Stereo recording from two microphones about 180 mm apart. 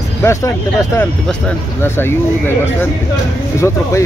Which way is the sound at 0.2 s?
15° left (ahead or behind).